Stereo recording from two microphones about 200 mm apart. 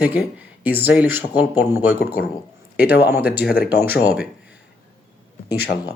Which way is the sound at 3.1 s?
10° right (ahead or behind).